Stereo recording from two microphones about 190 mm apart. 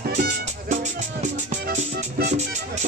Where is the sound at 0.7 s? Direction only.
40° right (ahead or behind).